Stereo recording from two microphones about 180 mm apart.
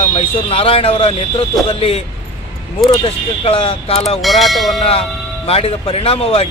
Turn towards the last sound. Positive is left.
turn(degrees=35)  # may be behind; listen again after turning